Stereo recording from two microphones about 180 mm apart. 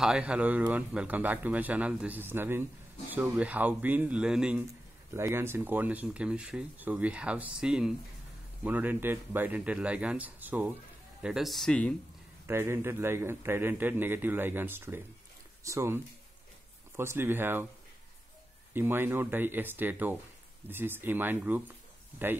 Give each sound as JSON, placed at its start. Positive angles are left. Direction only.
{"t": 0.0, "sound": "speech", "side_deg": -5}
{"t": 12.4, "sound": "speech", "side_deg": -15}
{"t": 18.7, "sound": "speech", "side_deg": -10}